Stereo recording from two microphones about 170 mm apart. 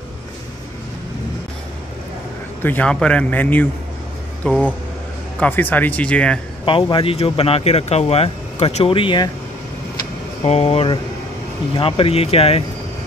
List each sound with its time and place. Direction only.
2.6 s speech: 10° left (ahead or behind)
6.6 s speech: 30° left (ahead or behind)
10.4 s speech: 35° left (ahead or behind)